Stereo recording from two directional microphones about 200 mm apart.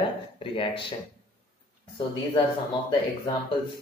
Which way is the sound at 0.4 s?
25° left (ahead or behind).